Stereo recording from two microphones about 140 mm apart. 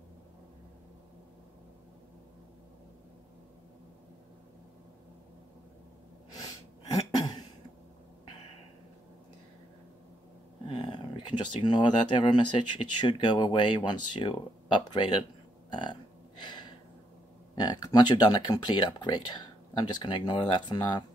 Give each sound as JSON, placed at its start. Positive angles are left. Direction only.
{"t": 7.0, "sound": "cough", "side_deg": 30}
{"t": 10.7, "sound": "speech", "side_deg": 35}
{"t": 15.7, "sound": "a sound", "side_deg": 35}
{"t": 17.6, "sound": "speech", "side_deg": 30}